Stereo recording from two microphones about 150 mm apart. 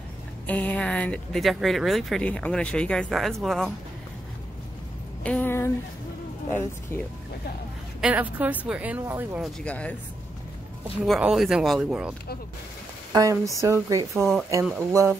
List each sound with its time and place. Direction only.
0.5 s speech: 10° left (ahead or behind)
5.2 s speech: 10° left (ahead or behind)
8.0 s a woman's voice: 10° right (ahead or behind)
9.4 s speech: 5° left (ahead or behind)
11.1 s speech: 5° right (ahead or behind)
13.1 s a woman's voice: 25° right (ahead or behind)